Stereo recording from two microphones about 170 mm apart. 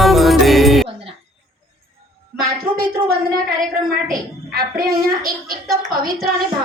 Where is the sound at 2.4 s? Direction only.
60° right (ahead or behind).